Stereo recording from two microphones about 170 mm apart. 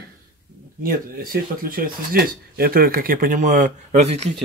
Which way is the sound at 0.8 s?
60° right (ahead or behind).